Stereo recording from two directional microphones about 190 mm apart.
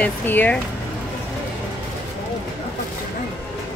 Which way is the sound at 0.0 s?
10° left (ahead or behind).